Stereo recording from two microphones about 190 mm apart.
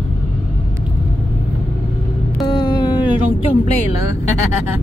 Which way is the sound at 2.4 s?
20° left (ahead or behind).